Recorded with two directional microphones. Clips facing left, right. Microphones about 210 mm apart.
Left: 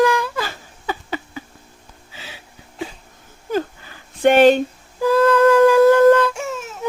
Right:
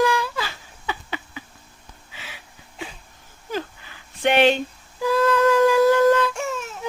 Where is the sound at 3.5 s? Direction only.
45° left (ahead or behind).